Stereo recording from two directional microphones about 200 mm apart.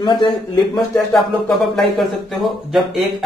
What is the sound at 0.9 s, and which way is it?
Speech, centre (ahead or behind).